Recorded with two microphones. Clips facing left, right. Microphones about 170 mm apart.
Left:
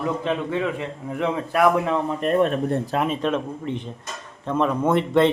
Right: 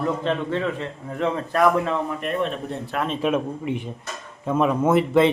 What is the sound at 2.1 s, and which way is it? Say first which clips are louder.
Speech: left 5 dB; 40° left (ahead or behind).